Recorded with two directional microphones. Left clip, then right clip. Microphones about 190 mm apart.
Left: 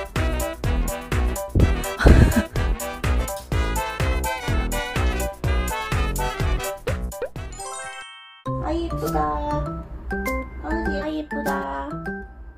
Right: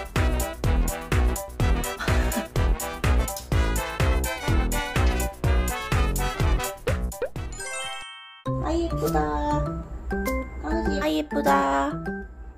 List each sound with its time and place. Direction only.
0.1 s music: centre (ahead or behind)
8.5 s music: centre (ahead or behind)
11.0 s music: 45° right (ahead or behind)